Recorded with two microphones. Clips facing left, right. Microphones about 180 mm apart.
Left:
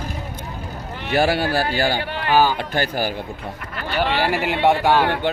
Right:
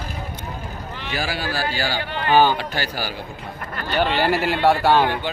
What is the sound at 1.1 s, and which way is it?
Speech, 60° left (ahead or behind).